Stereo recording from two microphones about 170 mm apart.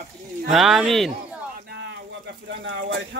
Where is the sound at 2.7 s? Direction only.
90° right.